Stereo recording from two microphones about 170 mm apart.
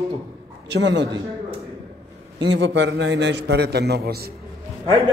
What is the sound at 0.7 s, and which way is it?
Speech, 90° right.